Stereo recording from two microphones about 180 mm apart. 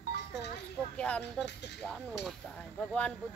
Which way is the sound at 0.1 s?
70° left (ahead or behind).